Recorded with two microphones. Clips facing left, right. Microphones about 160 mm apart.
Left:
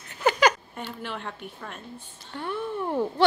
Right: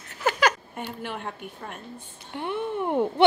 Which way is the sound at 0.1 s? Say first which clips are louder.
Left 2 dB; centre (ahead or behind).